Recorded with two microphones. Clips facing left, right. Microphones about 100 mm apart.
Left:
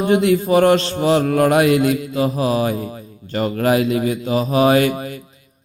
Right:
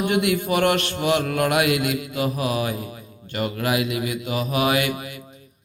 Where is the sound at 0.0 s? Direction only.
30° left (ahead or behind).